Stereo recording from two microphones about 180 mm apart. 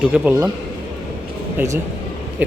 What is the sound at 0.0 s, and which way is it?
Speech, 10° right (ahead or behind).